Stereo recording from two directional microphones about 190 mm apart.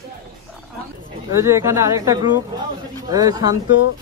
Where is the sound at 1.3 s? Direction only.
15° right (ahead or behind).